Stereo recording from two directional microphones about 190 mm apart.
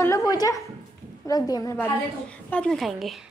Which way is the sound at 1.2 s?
20° left (ahead or behind).